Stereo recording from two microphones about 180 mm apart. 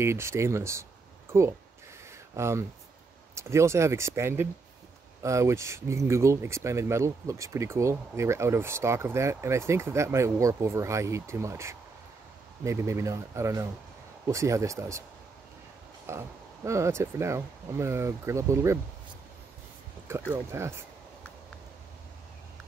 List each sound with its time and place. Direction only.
0.0 s speech: 15° right (ahead or behind)
2.3 s speech: 15° right (ahead or behind)
16.1 s speech: 15° right (ahead or behind)
20.1 s speech: 15° right (ahead or behind)